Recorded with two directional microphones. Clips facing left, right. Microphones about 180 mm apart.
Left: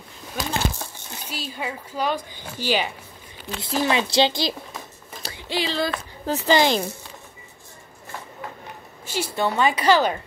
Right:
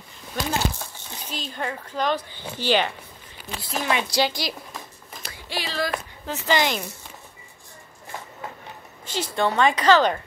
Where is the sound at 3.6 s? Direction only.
30° left (ahead or behind).